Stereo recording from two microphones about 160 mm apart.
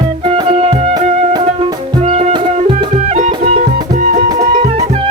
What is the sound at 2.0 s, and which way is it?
Music, 45° right (ahead or behind).